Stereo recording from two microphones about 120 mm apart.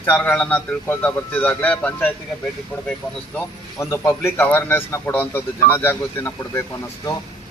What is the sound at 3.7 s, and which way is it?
A man's voice, 25° left (ahead or behind).